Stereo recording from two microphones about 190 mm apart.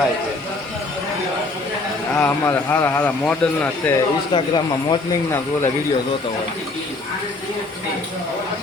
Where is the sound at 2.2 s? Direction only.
10° left (ahead or behind).